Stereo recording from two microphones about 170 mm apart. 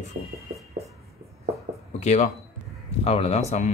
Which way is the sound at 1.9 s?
45° left (ahead or behind).